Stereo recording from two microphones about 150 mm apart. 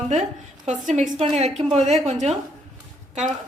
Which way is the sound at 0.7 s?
55° right (ahead or behind).